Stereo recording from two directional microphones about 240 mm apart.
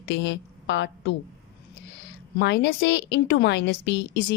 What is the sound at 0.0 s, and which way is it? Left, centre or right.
A woman's voice, left.